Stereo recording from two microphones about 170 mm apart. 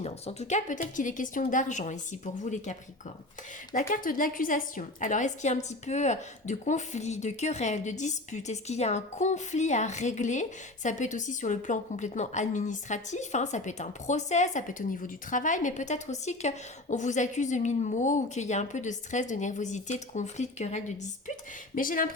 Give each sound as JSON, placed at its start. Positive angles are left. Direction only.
{"t": 0.0, "sound": "a woman's voice", "side_deg": 40}
{"t": 3.8, "sound": "a woman's voice", "side_deg": 55}
{"t": 21.8, "sound": "speech", "side_deg": 55}